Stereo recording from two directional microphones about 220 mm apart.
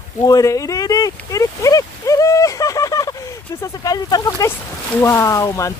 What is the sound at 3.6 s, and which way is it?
Speech, 15° left (ahead or behind).